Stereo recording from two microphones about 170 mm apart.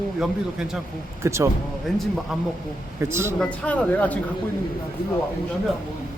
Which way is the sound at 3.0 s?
15° right (ahead or behind).